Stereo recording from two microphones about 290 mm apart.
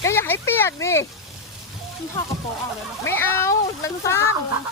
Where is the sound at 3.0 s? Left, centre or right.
Centre.